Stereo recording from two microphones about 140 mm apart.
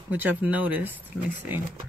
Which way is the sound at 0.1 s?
10° right (ahead or behind).